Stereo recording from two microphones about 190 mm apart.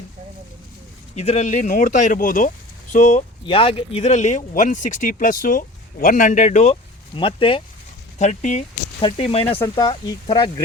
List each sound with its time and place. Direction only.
1.1 s speech: 35° left (ahead or behind)
3.4 s speech: 30° left (ahead or behind)
7.2 s speech: 30° left (ahead or behind)
9.6 s speech: 20° left (ahead or behind)